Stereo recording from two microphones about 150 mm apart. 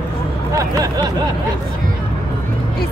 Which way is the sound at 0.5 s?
20° right (ahead or behind).